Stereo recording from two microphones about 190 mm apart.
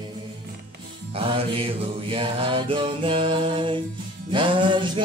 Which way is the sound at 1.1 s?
30° right (ahead or behind).